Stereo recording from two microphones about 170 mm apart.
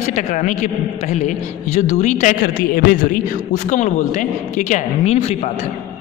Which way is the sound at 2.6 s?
60° left (ahead or behind).